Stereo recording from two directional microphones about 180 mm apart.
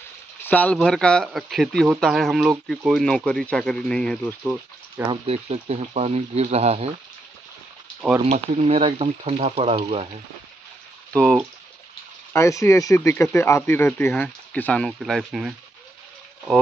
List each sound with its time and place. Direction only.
0.4 s speech: 10° left (ahead or behind)
5.0 s speech: 30° right (ahead or behind)
8.2 s speech: 35° right (ahead or behind)
12.3 s speech: 15° left (ahead or behind); by 15.5 s centre (ahead or behind)